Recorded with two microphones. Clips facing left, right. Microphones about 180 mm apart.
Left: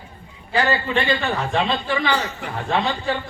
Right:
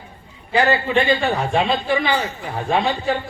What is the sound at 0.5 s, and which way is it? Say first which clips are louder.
A man's voice: right 3 dB; 15° right (ahead or behind).